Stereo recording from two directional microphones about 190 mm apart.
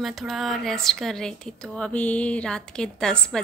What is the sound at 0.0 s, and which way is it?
A woman's voice, centre (ahead or behind).